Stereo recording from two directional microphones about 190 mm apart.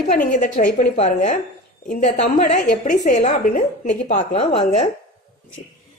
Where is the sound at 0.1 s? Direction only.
45° left (ahead or behind).